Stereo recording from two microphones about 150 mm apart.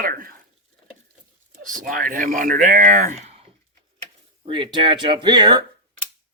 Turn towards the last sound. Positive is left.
turn(degrees=-30)  # may be behind; listen again after turning